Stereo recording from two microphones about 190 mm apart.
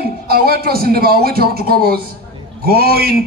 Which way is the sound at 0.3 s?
55° right (ahead or behind).